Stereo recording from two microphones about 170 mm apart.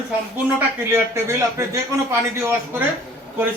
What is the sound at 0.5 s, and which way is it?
A man's voice, 15° right (ahead or behind).